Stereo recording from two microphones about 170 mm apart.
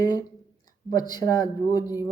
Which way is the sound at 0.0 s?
25° left (ahead or behind).